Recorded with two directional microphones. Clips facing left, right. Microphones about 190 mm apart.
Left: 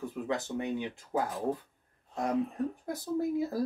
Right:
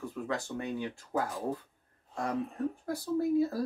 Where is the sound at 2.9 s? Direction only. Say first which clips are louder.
Right 3 dB; 20° left (ahead or behind).